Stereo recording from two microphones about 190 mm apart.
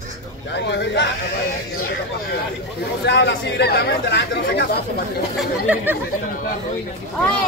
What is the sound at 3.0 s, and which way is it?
Speech, 65° left (ahead or behind).